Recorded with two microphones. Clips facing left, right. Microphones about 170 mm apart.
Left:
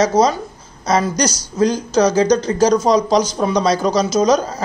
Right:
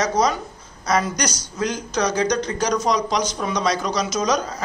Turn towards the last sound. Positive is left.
turn(degrees=30)  # may be behind; listen again after turning